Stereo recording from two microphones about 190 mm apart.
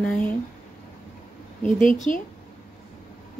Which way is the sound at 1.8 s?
45° left (ahead or behind).